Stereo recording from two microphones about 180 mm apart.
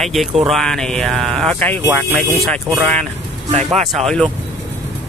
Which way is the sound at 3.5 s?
35° right (ahead or behind).